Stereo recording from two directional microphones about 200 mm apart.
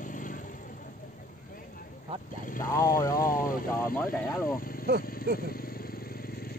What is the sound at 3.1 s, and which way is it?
Vehicle, 45° left (ahead or behind).